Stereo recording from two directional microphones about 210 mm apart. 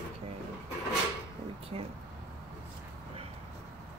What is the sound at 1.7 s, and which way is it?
Speech, 25° right (ahead or behind).